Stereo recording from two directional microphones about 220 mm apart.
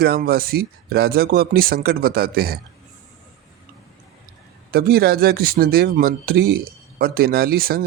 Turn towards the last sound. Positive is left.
turn(degrees=-45)  # may be behind; listen again after turning